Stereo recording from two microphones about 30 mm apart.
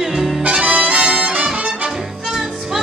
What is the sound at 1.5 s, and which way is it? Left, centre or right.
Music, right.